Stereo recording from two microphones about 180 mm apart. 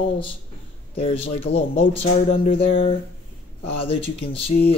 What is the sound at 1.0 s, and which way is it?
Speech, 30° left (ahead or behind).